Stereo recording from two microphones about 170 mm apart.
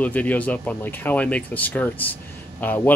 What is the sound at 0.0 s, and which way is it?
Speech, 10° left (ahead or behind).